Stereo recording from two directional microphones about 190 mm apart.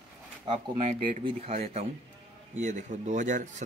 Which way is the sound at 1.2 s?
30° right (ahead or behind).